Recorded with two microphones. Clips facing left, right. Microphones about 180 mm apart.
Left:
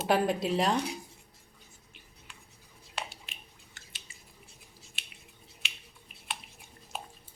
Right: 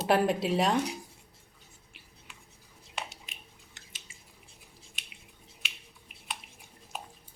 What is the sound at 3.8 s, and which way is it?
Squish, 20° right (ahead or behind).